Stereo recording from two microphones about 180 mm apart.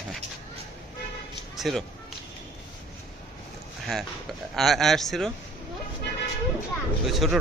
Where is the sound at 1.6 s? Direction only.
Centre (ahead or behind).